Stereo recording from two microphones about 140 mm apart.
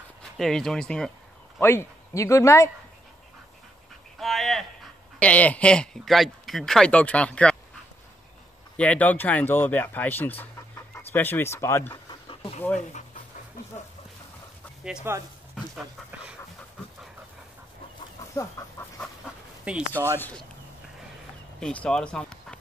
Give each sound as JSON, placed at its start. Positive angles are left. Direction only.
{"t": 0.2, "sound": "speech", "side_deg": 5}
{"t": 1.6, "sound": "speech", "side_deg": 20}
{"t": 4.2, "sound": "a sound", "side_deg": 0}
{"t": 5.2, "sound": "speech", "side_deg": 10}
{"t": 8.7, "sound": "speech", "side_deg": 10}
{"t": 12.1, "sound": "a sound", "side_deg": 40}
{"t": 15.1, "sound": "speech", "side_deg": -15}
{"t": 18.3, "sound": "chicken", "side_deg": 20}
{"t": 19.9, "sound": "speech", "side_deg": 15}
{"t": 21.5, "sound": "speech", "side_deg": 5}